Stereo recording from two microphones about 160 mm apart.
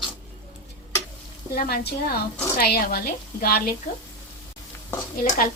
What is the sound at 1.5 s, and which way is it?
A woman's voice, 70° left (ahead or behind).